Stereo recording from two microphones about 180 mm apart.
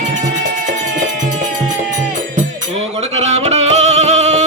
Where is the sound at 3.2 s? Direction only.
35° right (ahead or behind).